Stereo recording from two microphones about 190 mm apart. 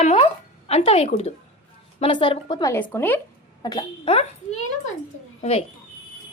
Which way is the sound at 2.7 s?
10° left (ahead or behind).